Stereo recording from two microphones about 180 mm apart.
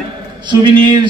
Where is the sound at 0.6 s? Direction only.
25° right (ahead or behind).